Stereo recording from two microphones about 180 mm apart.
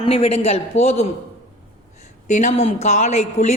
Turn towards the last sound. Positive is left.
turn(degrees=40)  # may be behind; listen again after turning